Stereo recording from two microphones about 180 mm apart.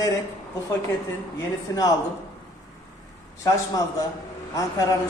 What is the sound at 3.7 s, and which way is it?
Speech, 20° left (ahead or behind).